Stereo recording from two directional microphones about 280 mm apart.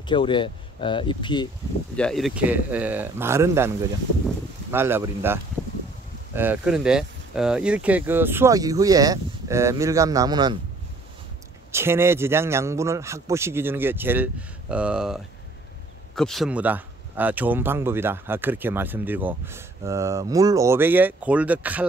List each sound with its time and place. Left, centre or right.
0.0 s speech: centre
2.0 s speech: centre
11.7 s speech: centre
16.2 s speech: centre